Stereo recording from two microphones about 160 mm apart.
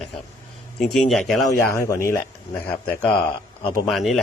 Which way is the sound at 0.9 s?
Centre (ahead or behind).